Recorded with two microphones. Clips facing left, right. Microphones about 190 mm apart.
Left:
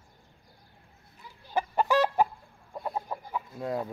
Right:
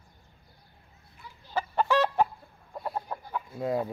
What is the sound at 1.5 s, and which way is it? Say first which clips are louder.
Chicken: left 1 dB; 15° left (ahead or behind).